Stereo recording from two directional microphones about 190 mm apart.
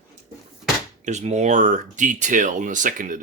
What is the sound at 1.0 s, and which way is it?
Speech, 40° right (ahead or behind).